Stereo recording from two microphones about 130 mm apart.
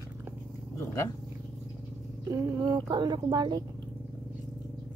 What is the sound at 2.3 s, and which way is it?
A woman's voice, 25° right (ahead or behind).